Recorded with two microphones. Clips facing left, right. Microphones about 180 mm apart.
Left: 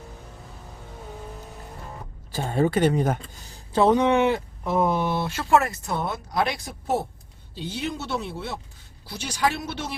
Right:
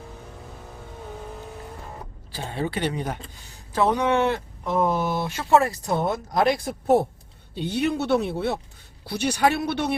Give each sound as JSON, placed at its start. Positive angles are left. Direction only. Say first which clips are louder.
{"t": 2.3, "sound": "speech", "louder": "left 6 dB", "side_deg": 45}
{"t": 3.7, "sound": "speech", "louder": "left 3 dB", "side_deg": 25}
{"t": 5.4, "sound": "speech", "louder": "right 2 dB", "side_deg": -25}